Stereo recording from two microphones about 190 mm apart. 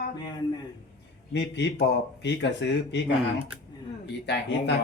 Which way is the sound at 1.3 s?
65° left (ahead or behind).